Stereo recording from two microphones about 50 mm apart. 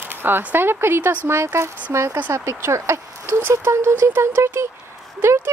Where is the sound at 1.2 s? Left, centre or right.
Right.